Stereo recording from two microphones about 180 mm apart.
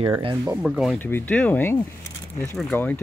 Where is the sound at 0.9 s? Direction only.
10° left (ahead or behind).